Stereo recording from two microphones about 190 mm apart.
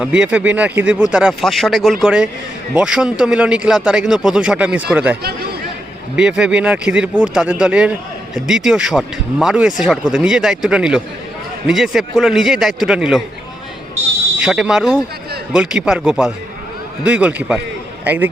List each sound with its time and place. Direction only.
0.0 s speech: 5° right (ahead or behind)
5.2 s a sound: 55° right (ahead or behind)
6.1 s speech: 5° right (ahead or behind)
14.4 s a man's voice: 5° right (ahead or behind)